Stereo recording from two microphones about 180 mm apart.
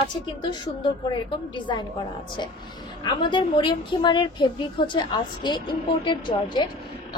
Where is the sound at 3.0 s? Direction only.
25° left (ahead or behind).